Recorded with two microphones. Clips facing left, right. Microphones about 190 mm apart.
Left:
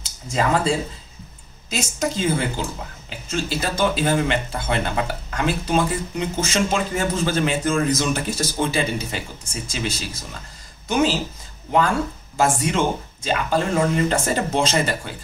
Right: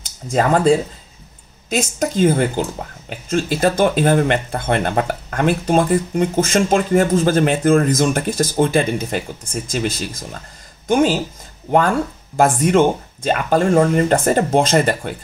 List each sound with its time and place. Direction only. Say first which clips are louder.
0.3 s speech: right 6 dB; 50° right (ahead or behind)
12.4 s speech: right 6 dB; 55° right (ahead or behind)